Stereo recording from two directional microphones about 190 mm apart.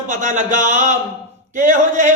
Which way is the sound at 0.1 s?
40° right (ahead or behind).